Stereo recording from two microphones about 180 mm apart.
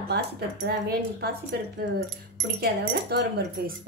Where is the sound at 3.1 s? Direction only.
65° right (ahead or behind).